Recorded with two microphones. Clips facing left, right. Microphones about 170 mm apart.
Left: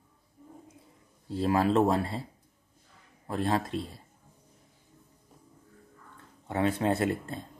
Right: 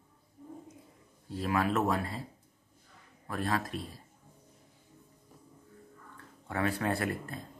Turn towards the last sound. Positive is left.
turn(degrees=25)  # may be behind; listen again after turning